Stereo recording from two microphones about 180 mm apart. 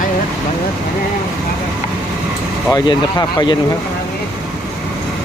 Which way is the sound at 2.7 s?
25° left (ahead or behind).